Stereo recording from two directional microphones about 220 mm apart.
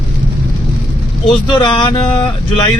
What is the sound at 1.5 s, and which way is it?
Music, 20° left (ahead or behind).